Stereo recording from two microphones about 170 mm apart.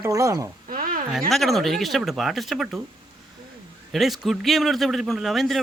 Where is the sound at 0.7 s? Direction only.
55° right (ahead or behind).